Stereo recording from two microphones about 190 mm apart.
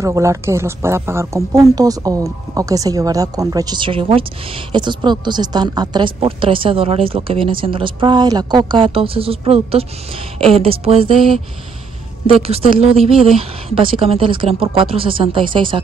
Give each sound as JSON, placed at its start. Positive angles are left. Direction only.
{"t": 0.0, "sound": "a woman's voice", "side_deg": -15}
{"t": 12.3, "sound": "a woman's voice", "side_deg": -30}